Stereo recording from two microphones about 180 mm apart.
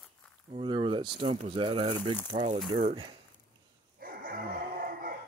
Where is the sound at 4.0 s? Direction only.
55° right (ahead or behind).